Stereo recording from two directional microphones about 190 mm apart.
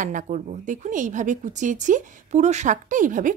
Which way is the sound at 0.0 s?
40° right (ahead or behind).